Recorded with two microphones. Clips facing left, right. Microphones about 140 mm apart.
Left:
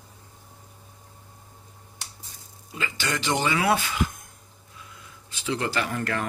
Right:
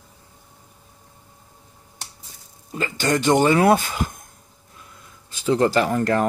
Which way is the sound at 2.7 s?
45° right (ahead or behind).